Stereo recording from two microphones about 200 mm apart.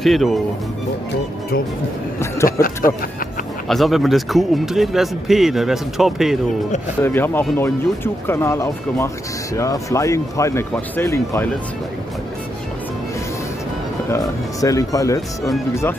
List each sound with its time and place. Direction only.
0.0 s speech: centre (ahead or behind)
2.1 s speech: 15° left (ahead or behind)
3.6 s speech: centre (ahead or behind)
7.0 s speech: 10° left (ahead or behind)
14.1 s speech: 15° left (ahead or behind)